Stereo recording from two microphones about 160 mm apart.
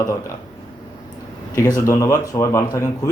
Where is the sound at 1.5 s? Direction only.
20° left (ahead or behind).